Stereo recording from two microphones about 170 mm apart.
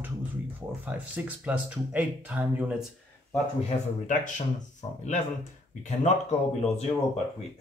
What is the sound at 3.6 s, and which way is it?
Speech, 45° left (ahead or behind).